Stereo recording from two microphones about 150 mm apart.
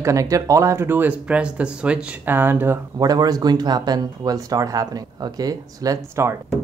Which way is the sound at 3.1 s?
25° right (ahead or behind).